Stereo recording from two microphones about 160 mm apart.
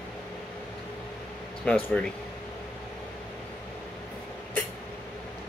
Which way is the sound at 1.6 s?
5° left (ahead or behind).